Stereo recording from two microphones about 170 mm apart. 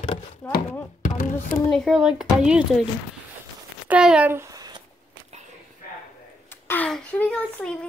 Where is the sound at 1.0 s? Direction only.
55° left (ahead or behind).